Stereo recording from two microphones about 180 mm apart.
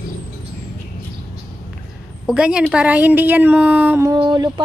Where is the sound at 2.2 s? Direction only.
5° right (ahead or behind).